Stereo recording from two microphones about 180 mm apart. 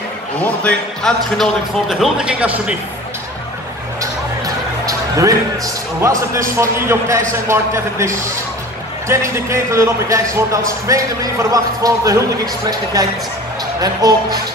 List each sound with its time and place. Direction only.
0.4 s a man's voice: 5° left (ahead or behind)
4.8 s music: 15° right (ahead or behind)
5.9 s a man's voice: 15° right (ahead or behind)
9.1 s a man's voice: 15° right (ahead or behind)
13.7 s speech: 20° right (ahead or behind)